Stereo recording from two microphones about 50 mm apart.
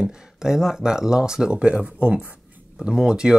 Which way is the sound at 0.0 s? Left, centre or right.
Centre.